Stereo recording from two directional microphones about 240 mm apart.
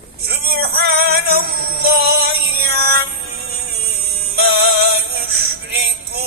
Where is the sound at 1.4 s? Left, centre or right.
Right.